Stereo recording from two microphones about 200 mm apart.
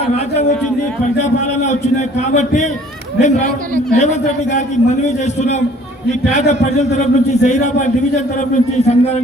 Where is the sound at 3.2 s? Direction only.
35° left (ahead or behind).